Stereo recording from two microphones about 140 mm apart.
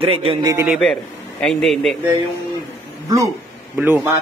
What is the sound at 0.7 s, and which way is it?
Speech, centre (ahead or behind).